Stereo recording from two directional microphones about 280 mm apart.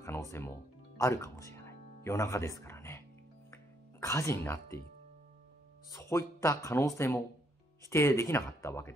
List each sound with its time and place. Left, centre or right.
0.0 s music: centre
4.0 s speech: centre
5.9 s speech: centre